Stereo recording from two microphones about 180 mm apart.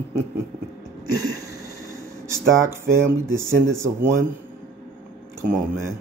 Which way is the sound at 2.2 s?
15° right (ahead or behind).